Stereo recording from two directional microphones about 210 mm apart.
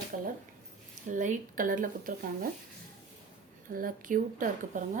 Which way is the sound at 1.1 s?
35° right (ahead or behind).